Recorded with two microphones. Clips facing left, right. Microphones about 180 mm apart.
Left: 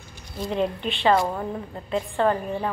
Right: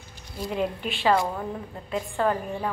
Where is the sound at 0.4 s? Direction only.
5° right (ahead or behind).